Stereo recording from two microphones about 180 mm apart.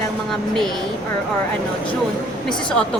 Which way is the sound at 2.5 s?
5° left (ahead or behind).